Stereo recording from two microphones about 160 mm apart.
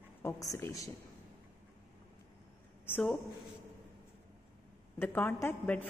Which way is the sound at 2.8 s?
10° left (ahead or behind).